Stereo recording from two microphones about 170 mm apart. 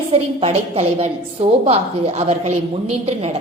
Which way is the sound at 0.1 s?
35° right (ahead or behind).